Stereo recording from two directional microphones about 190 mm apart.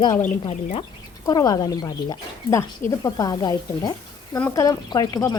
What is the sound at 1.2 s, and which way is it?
Speech, 20° left (ahead or behind).